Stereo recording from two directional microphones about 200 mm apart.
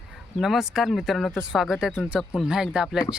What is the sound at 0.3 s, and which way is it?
Speech, centre (ahead or behind).